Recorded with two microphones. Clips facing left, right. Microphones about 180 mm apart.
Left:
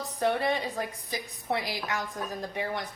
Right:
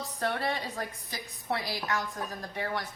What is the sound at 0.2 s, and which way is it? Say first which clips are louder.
A woman's voice: left 5 dB; 20° left (ahead or behind).